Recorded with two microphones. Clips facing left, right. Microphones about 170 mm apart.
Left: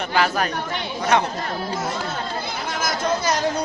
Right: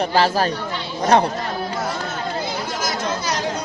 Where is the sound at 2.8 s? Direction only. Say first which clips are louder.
Left 4 dB; 55° left (ahead or behind).